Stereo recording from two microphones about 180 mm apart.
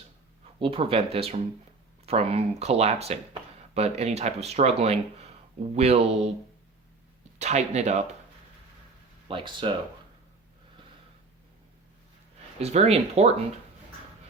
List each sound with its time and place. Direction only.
0.6 s speech: 30° right (ahead or behind)
7.3 s speech: 40° right (ahead or behind)
9.3 s speech: 25° right (ahead or behind)
12.5 s speech: 35° right (ahead or behind)